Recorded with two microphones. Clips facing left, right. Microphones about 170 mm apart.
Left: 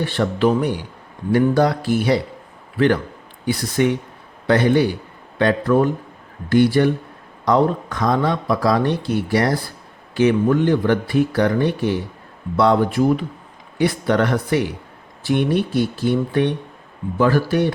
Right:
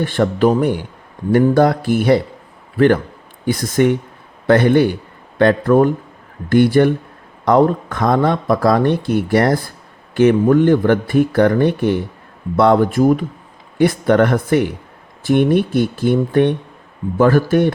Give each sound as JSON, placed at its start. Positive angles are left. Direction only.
{"t": 0.0, "sound": "a man's voice", "side_deg": -50}